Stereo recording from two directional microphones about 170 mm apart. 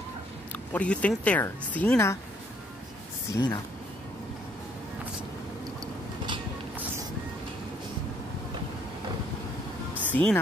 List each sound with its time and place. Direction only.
0.7 s speech: 10° left (ahead or behind)
3.3 s speech: 25° left (ahead or behind)
10.0 s speech: 10° left (ahead or behind)